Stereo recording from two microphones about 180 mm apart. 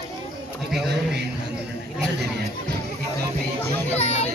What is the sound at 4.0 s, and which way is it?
Children playing, 35° left (ahead or behind).